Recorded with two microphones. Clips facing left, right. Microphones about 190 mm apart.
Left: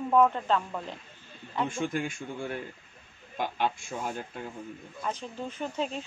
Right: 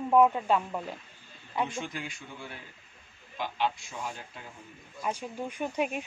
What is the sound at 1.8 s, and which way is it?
Speech, 50° left (ahead or behind).